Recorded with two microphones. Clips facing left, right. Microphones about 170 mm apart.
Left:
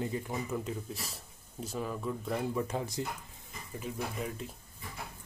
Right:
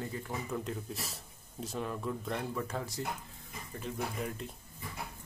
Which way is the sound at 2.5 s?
20° left (ahead or behind).